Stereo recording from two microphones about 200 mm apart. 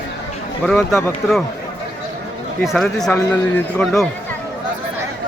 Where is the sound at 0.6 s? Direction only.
5° left (ahead or behind).